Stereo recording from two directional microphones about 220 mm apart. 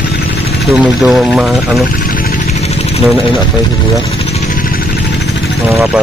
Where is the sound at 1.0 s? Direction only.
5° right (ahead or behind).